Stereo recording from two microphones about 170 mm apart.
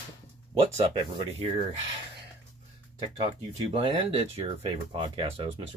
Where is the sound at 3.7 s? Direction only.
35° right (ahead or behind).